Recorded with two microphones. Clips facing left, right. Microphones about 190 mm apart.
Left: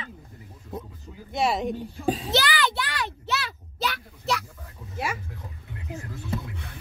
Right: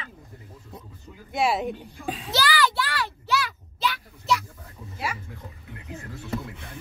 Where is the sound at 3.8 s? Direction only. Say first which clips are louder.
Right 1 dB; 45° left (ahead or behind).